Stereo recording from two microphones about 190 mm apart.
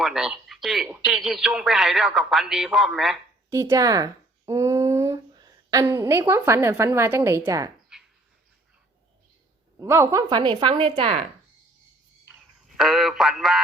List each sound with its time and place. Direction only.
0.0 s speech: centre (ahead or behind)
3.5 s speech: 15° right (ahead or behind)
7.9 s a sound: 5° right (ahead or behind)
9.7 s a woman's voice: 15° right (ahead or behind)
12.3 s speech: centre (ahead or behind)